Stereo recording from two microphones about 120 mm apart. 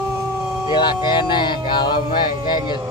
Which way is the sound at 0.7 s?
40° left (ahead or behind).